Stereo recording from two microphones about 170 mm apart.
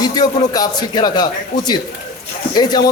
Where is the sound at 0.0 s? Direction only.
20° left (ahead or behind).